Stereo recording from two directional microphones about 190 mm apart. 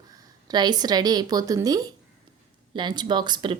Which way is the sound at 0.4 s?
20° right (ahead or behind).